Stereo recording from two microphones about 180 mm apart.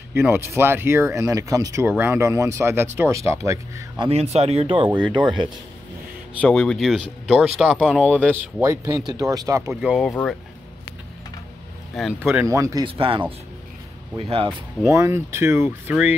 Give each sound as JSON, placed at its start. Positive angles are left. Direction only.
{"t": 0.1, "sound": "speech", "side_deg": -10}
{"t": 4.0, "sound": "speech", "side_deg": -35}
{"t": 6.4, "sound": "speech", "side_deg": 5}
{"t": 8.3, "sound": "speech", "side_deg": -10}
{"t": 9.7, "sound": "speech", "side_deg": -5}
{"t": 11.9, "sound": "speech", "side_deg": 0}
{"t": 12.4, "sound": "speech", "side_deg": -20}
{"t": 12.8, "sound": "speech", "side_deg": -30}
{"t": 14.9, "sound": "speech", "side_deg": -15}